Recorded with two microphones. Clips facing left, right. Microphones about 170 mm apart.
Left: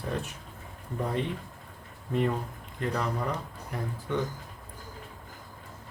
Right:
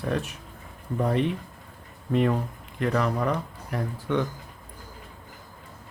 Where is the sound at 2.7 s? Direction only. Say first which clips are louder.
Right 6 dB; 80° right.